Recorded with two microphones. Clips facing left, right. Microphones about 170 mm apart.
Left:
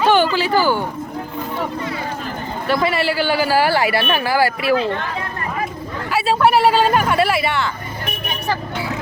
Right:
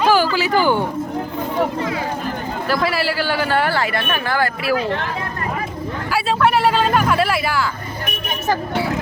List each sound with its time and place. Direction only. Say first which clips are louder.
0.0 s a sound: left 1 dB; centre (ahead or behind)
0.3 s speech: even; 15° right (ahead or behind)
2.6 s speech: left 2 dB; centre (ahead or behind)
6.1 s speech: left 2 dB; 5° left (ahead or behind)